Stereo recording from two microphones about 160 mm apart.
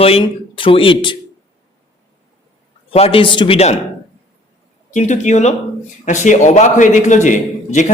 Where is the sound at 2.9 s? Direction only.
35° left (ahead or behind).